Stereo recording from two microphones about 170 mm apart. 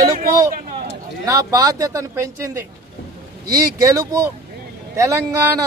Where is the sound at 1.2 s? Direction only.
20° right (ahead or behind).